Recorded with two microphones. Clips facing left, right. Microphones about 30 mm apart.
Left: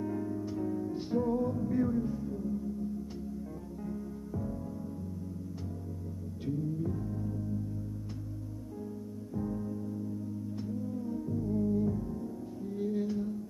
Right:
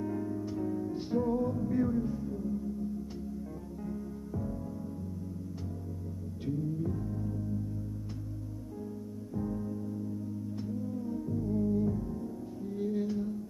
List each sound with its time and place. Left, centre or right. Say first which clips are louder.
0.0 s music: even; centre
0.3 s music: even; centre
0.6 s music: even; centre
3.8 s music: even; centre
6.8 s music: even; centre
9.3 s music: even; centre